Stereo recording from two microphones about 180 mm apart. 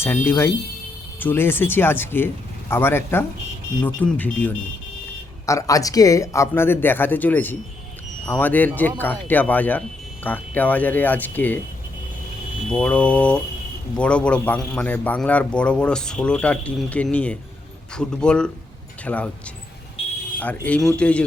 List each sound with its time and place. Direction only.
0.0 s a man's voice: 15° left (ahead or behind)
12.7 s a man's voice: 5° left (ahead or behind)
20.0 s a sound: 35° left (ahead or behind)
20.7 s a man's voice: 5° left (ahead or behind)